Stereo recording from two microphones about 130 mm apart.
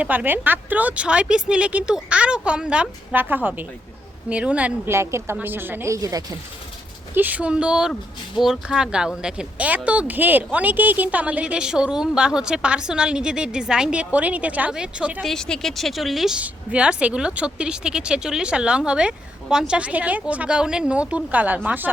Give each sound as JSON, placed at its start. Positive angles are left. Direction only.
{"t": 0.0, "sound": "a woman's voice", "side_deg": -10}
{"t": 7.1, "sound": "speech", "side_deg": -15}
{"t": 15.2, "sound": "speech", "side_deg": 5}